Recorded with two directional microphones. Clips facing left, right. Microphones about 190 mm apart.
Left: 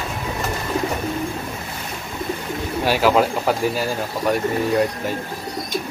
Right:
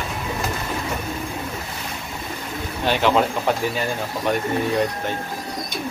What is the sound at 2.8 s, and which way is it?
Speech, 5° left (ahead or behind).